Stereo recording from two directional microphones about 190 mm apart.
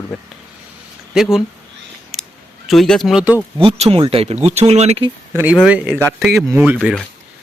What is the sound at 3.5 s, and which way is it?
Speech, 30° right (ahead or behind).